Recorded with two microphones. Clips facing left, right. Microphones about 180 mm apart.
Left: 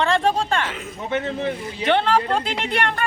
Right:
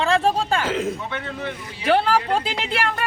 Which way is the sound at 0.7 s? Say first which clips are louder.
Right 10 dB; 90° right.